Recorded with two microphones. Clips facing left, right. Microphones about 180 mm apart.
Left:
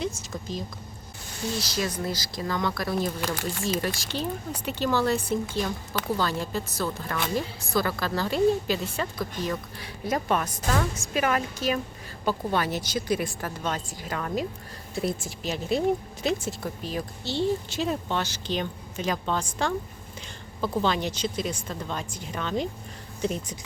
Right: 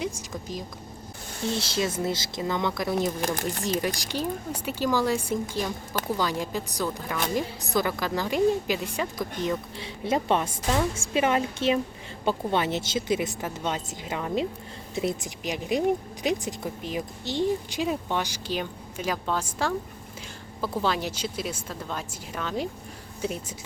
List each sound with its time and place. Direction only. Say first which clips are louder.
0.0 s a woman's voice: even; 15° right (ahead or behind)
1.5 s a woman's voice: right 2 dB; 25° right (ahead or behind)
3.2 s speech: right 2 dB; 45° right (ahead or behind)
3.8 s a woman's voice: right 1 dB; 15° right (ahead or behind)